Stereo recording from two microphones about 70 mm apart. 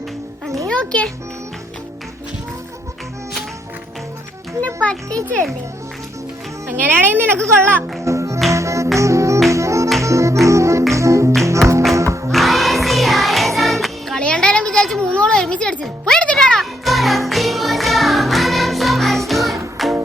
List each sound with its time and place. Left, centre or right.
0.7 s a child's voice: centre
4.6 s a child's voice: centre
6.7 s speech: right
8.0 s music: right
12.3 s music: centre
14.2 s a sound: centre
16.0 s music: centre
16.8 s music: centre